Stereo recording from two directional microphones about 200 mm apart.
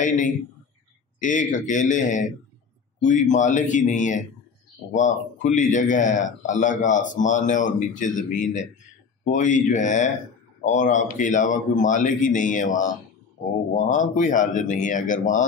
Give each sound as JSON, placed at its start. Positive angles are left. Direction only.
{"t": 0.0, "sound": "a man's voice", "side_deg": 40}
{"t": 13.9, "sound": "a man's voice", "side_deg": 40}